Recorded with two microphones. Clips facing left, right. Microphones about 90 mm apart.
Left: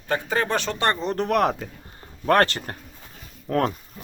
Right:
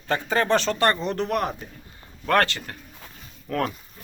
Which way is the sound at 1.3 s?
80° left.